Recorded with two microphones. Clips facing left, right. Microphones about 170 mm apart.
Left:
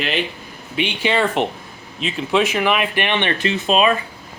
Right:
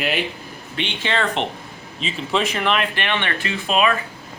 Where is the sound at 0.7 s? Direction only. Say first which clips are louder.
Left 4 dB; 10° left (ahead or behind).